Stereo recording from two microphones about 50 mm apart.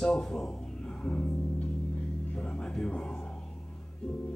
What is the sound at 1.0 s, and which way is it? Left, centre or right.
Music, left.